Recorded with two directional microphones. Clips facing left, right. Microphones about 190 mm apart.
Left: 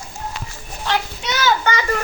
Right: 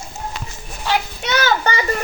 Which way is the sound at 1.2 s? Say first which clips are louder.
Right 1 dB; 60° right (ahead or behind).